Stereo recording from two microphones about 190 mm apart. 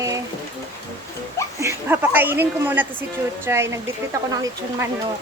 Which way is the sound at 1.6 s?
15° right (ahead or behind).